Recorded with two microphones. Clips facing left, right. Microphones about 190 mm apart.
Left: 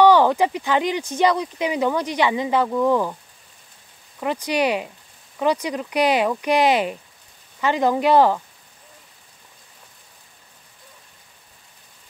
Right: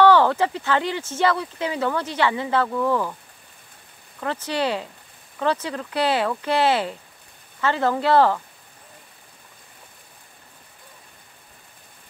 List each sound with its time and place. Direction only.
0.0 s speech: 15° left (ahead or behind)
4.2 s speech: 15° left (ahead or behind)